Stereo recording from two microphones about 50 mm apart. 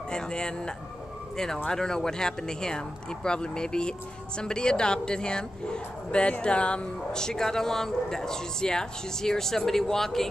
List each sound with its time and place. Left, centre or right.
0.1 s speech: centre